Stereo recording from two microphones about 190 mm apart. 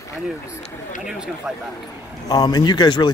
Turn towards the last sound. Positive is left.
turn(degrees=20)  # may be behind; listen again after turning